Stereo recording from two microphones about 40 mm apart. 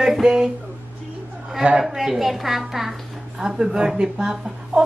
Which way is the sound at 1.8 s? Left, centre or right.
Centre.